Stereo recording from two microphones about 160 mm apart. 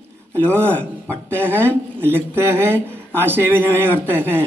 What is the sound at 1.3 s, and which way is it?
Speech, 15° right (ahead or behind).